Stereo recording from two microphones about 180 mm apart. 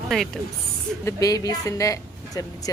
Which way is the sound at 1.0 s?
20° left (ahead or behind).